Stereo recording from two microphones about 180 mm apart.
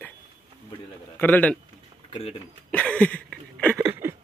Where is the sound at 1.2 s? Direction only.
10° left (ahead or behind).